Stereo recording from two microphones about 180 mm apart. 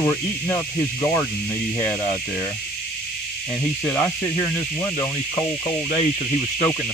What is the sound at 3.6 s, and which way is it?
Speech, 5° left (ahead or behind).